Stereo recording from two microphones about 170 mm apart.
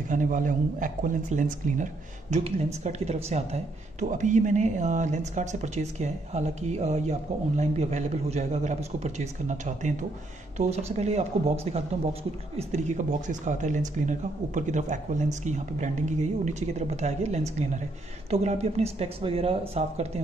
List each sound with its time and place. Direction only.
0.1 s speech: 50° right (ahead or behind)